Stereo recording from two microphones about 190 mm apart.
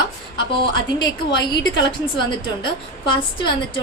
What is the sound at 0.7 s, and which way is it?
A woman's voice, 25° left (ahead or behind).